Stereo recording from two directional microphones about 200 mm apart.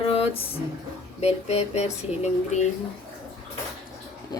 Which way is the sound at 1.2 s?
30° left (ahead or behind).